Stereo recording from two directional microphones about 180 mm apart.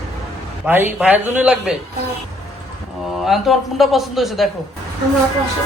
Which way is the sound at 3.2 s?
Centre (ahead or behind).